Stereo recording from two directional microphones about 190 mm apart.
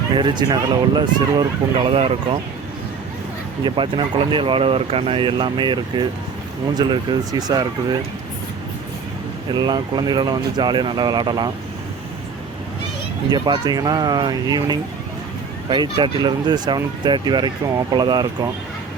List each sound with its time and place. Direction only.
0.2 s speech: 25° right (ahead or behind)
3.6 s speech: 25° right (ahead or behind)
9.5 s speech: 25° right (ahead or behind)
13.3 s speech: 25° right (ahead or behind)